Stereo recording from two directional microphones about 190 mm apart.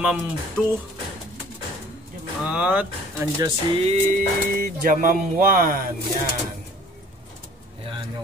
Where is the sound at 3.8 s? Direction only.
35° right (ahead or behind).